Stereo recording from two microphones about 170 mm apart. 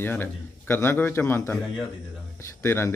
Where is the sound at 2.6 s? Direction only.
15° left (ahead or behind).